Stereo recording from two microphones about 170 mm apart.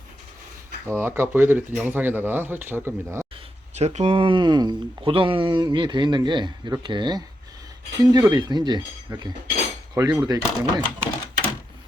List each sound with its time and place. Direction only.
0.9 s speech: 15° right (ahead or behind)
3.8 s speech: 40° right (ahead or behind); by 11.1 s 20° right (ahead or behind)